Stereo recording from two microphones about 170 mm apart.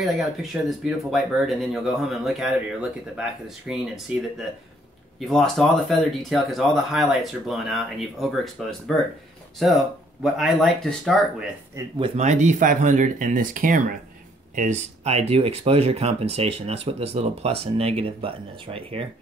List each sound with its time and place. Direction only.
0.0 s speech: centre (ahead or behind)
5.2 s speech: centre (ahead or behind)
10.2 s speech: centre (ahead or behind)
12.2 s speech: 45° right (ahead or behind)